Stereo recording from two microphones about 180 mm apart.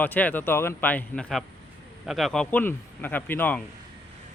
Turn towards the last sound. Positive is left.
turn(degrees=10)  # may be behind; listen again after turning